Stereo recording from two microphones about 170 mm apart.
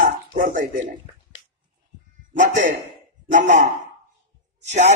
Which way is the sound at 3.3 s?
45° right (ahead or behind).